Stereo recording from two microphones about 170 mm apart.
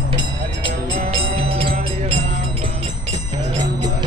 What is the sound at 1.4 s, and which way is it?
Music, 35° right (ahead or behind).